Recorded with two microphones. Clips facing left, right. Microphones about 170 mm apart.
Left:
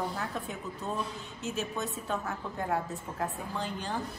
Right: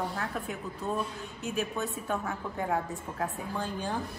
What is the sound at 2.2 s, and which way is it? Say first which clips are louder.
Speech: right 2 dB; centre (ahead or behind).